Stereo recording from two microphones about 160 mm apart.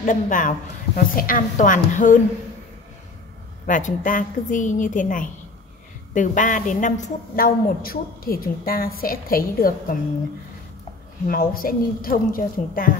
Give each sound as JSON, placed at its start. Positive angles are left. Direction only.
{"t": 0.0, "sound": "a woman's voice", "side_deg": 55}
{"t": 3.6, "sound": "a woman's voice", "side_deg": 55}
{"t": 11.2, "sound": "a woman's voice", "side_deg": 65}